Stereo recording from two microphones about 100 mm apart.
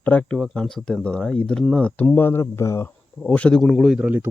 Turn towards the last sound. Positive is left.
turn(degrees=-15)  # may be behind; listen again after turning